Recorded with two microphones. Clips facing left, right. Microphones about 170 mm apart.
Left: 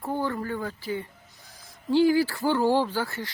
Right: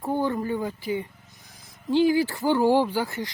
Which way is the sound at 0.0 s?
15° right (ahead or behind).